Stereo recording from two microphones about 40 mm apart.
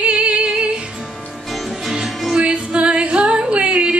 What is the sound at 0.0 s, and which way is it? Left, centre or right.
Music, right.